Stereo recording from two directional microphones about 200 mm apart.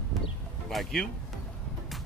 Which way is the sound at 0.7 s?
Centre (ahead or behind).